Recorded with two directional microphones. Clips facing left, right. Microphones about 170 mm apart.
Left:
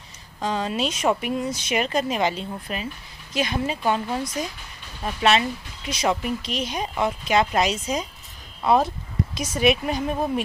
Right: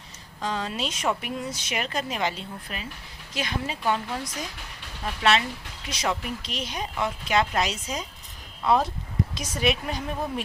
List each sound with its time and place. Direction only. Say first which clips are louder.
0.4 s speech: left 5 dB; 15° left (ahead or behind)
9.3 s speech: left 7 dB; 15° left (ahead or behind)